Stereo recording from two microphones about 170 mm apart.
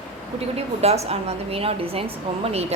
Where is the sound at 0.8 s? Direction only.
40° right (ahead or behind).